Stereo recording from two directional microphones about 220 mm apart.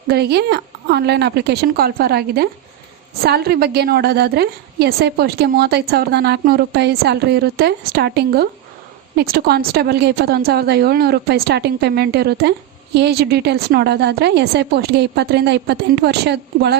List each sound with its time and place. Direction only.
0.1 s a woman's voice: 45° right (ahead or behind)